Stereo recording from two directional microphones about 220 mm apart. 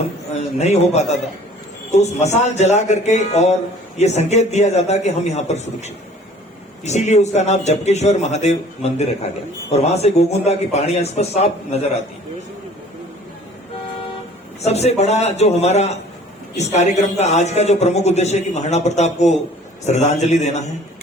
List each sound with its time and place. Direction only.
0.3 s speech: 30° left (ahead or behind)
14.6 s speech: 30° left (ahead or behind)